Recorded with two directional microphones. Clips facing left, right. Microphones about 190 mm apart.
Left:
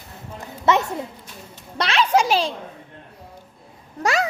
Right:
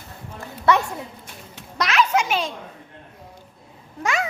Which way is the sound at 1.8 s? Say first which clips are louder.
Left 2 dB; 30° left (ahead or behind).